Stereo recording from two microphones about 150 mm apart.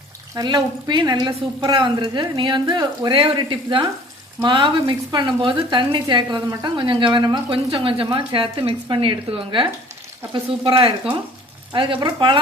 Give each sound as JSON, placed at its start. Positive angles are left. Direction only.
{"t": 0.3, "sound": "a woman's voice", "side_deg": -30}